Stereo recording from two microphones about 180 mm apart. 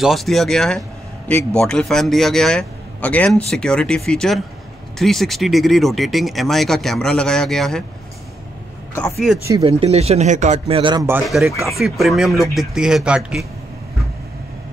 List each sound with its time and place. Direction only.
0.0 s a man's voice: centre (ahead or behind)
8.9 s a man's voice: 5° left (ahead or behind)
9.4 s speech: 15° right (ahead or behind)
9.7 s speech: 35° right (ahead or behind)
11.2 s a man's voice: centre (ahead or behind)